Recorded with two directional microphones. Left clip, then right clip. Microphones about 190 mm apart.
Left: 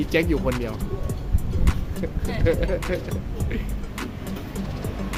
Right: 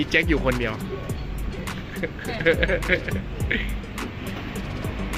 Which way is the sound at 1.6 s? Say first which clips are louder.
Even; centre (ahead or behind).